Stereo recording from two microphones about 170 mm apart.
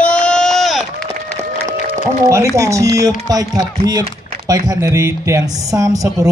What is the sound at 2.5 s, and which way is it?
Speech, 20° right (ahead or behind).